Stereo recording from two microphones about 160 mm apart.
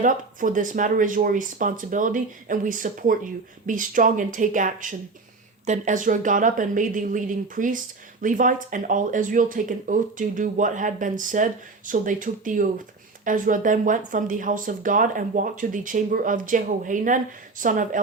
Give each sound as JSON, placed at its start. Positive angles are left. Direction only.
{"t": 0.0, "sound": "speech", "side_deg": -55}